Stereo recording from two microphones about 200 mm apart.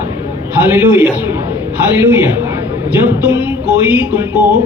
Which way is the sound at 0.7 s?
5° right (ahead or behind).